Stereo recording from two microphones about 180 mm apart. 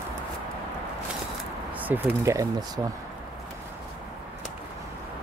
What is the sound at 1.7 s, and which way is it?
Speech, 10° right (ahead or behind).